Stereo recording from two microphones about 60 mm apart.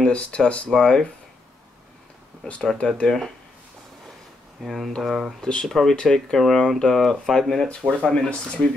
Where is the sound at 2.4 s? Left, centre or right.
Centre.